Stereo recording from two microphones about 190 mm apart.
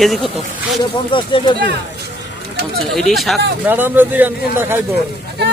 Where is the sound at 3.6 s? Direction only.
10° right (ahead or behind).